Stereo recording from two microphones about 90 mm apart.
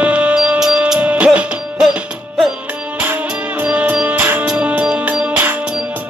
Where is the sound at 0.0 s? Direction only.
15° right (ahead or behind).